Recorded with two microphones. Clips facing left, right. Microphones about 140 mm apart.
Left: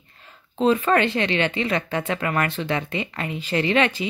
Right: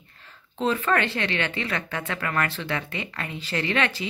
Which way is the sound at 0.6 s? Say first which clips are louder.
Left 5 dB; 15° left (ahead or behind).